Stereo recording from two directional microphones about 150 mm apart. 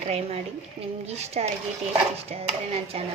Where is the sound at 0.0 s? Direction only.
45° right (ahead or behind).